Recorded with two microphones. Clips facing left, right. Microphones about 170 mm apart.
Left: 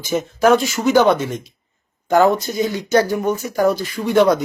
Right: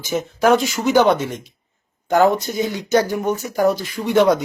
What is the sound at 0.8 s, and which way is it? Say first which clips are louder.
Speech: left 1 dB; 15° right (ahead or behind).